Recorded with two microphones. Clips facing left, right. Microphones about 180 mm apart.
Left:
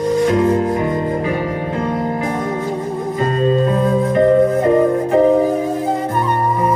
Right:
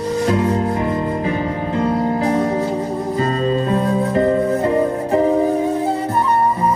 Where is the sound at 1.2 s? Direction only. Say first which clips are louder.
Left 1 dB; 30° right (ahead or behind).